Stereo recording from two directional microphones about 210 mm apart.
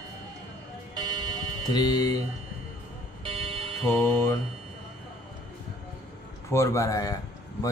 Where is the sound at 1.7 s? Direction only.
20° left (ahead or behind).